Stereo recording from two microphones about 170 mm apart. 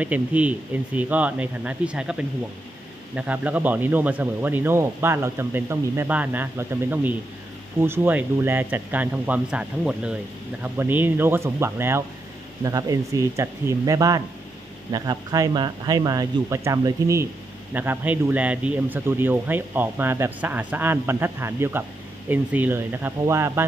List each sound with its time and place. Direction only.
0.0 s speech: 10° right (ahead or behind)